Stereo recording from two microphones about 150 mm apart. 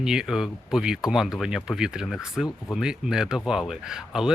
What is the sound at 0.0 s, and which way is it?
Speech, 5° right (ahead or behind).